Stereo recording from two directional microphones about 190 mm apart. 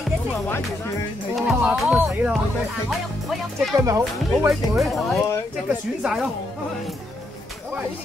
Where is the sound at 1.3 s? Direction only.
Centre (ahead or behind).